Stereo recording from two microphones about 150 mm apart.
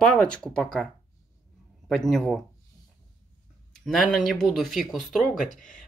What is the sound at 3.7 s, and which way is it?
Speech, 5° left (ahead or behind).